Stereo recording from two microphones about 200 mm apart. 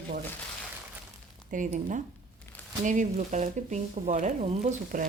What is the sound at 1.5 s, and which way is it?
Speech, 40° right (ahead or behind).